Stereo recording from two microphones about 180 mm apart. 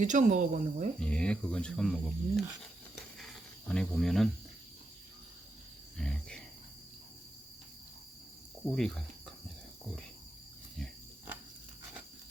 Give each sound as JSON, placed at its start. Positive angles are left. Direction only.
{"t": 0.0, "sound": "speech", "side_deg": -45}
{"t": 0.9, "sound": "speech", "side_deg": 5}
{"t": 2.9, "sound": "cricket", "side_deg": 0}
{"t": 6.0, "sound": "speech", "side_deg": 5}
{"t": 8.6, "sound": "speech", "side_deg": 5}